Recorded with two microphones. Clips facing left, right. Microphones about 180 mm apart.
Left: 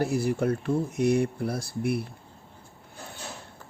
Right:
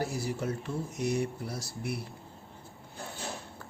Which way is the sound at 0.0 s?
60° left (ahead or behind).